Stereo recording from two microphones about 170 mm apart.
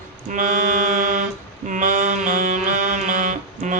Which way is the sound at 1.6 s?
50° right (ahead or behind).